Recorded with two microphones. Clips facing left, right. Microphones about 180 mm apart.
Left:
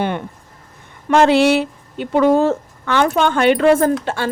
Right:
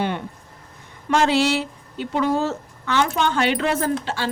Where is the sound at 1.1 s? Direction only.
60° left (ahead or behind).